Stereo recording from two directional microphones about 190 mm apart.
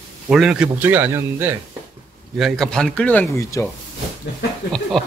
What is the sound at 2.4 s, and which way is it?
A man's voice, centre (ahead or behind).